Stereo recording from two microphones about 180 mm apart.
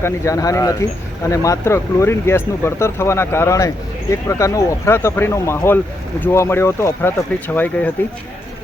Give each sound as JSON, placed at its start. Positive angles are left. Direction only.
{"t": 0.0, "sound": "speech", "side_deg": 20}